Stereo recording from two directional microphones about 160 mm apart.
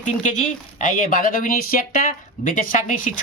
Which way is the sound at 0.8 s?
55° left (ahead or behind).